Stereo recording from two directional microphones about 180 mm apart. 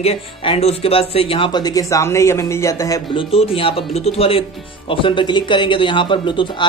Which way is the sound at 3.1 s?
30° left (ahead or behind).